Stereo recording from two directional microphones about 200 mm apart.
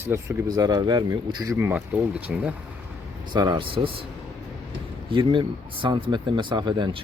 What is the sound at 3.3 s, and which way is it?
Speech, 20° right (ahead or behind).